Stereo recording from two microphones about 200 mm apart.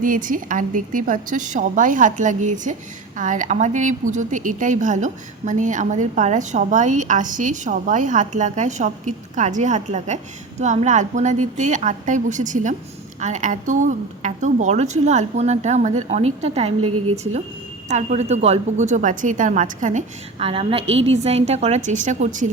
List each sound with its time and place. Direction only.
0.0 s speech: 40° right (ahead or behind)
16.8 s a woman's voice: 90° right
17.8 s speech: 35° right (ahead or behind)